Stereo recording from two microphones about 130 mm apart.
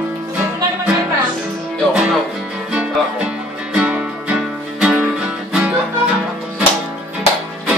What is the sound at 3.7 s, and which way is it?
Music, 5° right (ahead or behind).